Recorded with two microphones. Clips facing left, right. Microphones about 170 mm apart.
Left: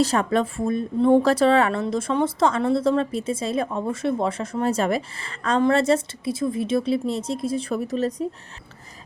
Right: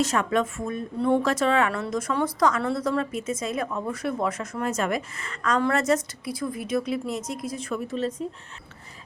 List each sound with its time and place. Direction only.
0.0 s a woman's voice: 35° left (ahead or behind)